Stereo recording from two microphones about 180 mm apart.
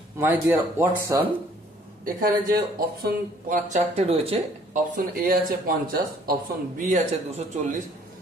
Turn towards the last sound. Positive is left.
turn(degrees=-40)  # may be behind; listen again after turning